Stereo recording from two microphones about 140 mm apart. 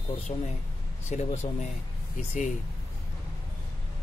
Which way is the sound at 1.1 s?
55° left (ahead or behind).